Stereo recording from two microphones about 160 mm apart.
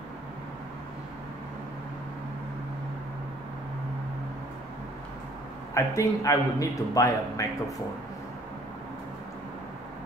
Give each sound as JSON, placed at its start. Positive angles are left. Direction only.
{"t": 5.8, "sound": "a man's voice", "side_deg": 20}